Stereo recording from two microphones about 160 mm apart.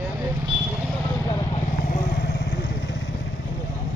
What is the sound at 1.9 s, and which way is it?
Vehicle, 80° left.